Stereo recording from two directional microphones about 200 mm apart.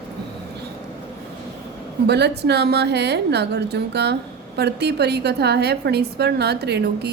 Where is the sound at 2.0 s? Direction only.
55° right (ahead or behind).